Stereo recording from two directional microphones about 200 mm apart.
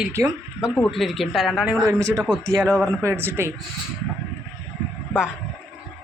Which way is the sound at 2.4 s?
15° right (ahead or behind).